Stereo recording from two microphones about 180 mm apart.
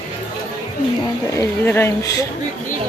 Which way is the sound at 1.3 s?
10° left (ahead or behind).